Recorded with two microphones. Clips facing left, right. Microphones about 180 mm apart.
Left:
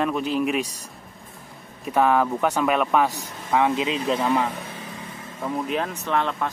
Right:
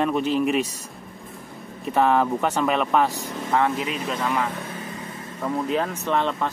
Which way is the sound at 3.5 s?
15° left (ahead or behind).